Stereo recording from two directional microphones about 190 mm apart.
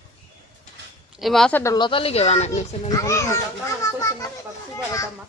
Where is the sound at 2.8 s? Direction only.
15° left (ahead or behind).